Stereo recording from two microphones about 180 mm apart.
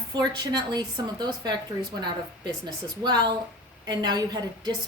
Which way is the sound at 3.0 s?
25° right (ahead or behind).